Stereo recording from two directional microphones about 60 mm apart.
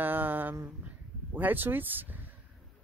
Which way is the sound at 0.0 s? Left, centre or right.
Right.